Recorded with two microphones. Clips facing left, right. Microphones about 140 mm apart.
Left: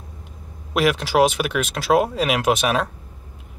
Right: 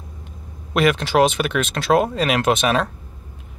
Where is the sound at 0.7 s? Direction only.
5° left (ahead or behind).